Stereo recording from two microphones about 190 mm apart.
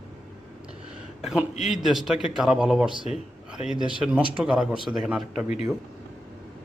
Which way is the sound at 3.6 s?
30° left (ahead or behind).